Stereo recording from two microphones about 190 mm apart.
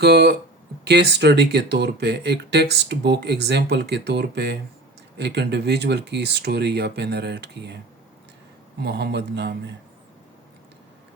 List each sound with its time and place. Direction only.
0.0 s speech: 60° right (ahead or behind)
8.8 s speech: 60° right (ahead or behind)